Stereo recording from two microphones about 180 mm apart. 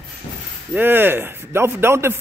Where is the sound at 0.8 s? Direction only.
10° right (ahead or behind).